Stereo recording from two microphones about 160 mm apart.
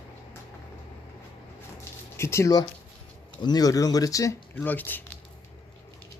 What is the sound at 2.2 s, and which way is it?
Speech, 15° left (ahead or behind).